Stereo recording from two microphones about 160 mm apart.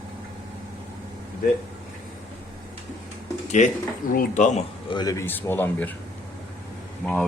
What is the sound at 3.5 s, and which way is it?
Speech, 55° left (ahead or behind).